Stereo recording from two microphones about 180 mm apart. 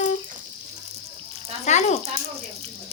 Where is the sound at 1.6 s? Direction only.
40° left (ahead or behind).